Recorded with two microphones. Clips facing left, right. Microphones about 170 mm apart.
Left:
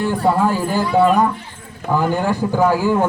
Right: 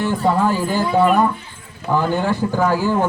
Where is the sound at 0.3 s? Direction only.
10° left (ahead or behind).